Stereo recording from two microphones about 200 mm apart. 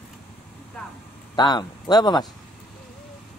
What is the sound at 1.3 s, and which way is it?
Speech, 20° left (ahead or behind).